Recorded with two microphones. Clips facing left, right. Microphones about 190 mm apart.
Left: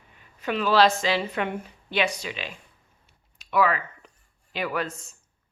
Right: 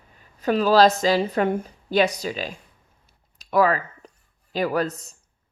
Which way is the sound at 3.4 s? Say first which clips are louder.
Right 4 dB; 40° right (ahead or behind).